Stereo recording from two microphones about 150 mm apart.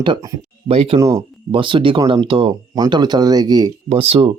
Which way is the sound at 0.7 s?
40° right (ahead or behind).